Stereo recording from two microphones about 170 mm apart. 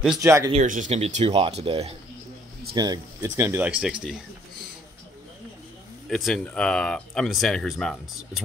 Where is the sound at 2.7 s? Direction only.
25° right (ahead or behind).